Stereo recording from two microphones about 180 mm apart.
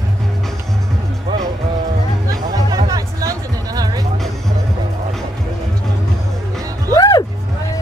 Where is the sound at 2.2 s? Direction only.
20° right (ahead or behind).